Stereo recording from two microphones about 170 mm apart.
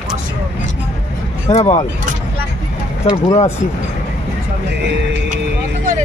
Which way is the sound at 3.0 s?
40° left (ahead or behind).